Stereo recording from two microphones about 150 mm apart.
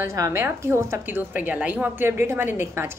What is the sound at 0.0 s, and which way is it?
Speech, 20° right (ahead or behind).